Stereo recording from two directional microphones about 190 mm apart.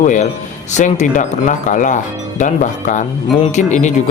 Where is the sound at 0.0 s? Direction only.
40° left (ahead or behind).